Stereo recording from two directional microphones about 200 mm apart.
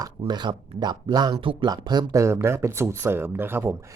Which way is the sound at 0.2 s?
20° right (ahead or behind).